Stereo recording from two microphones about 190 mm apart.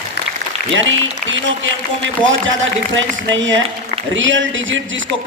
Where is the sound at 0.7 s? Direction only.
85° right.